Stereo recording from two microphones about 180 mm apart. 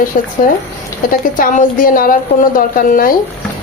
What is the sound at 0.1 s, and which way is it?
A woman's voice, 50° left (ahead or behind).